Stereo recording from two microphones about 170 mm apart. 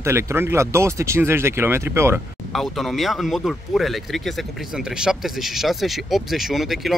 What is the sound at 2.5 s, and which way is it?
Speech, centre (ahead or behind).